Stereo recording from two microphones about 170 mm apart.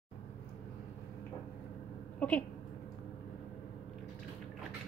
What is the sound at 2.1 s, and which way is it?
Speech, 10° left (ahead or behind).